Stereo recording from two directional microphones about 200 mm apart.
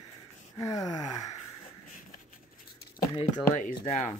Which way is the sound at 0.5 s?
15° left (ahead or behind).